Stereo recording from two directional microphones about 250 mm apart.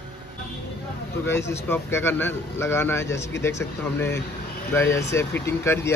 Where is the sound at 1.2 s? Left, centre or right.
Centre.